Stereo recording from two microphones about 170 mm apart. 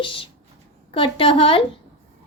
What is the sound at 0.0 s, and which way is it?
Speech, 30° left (ahead or behind).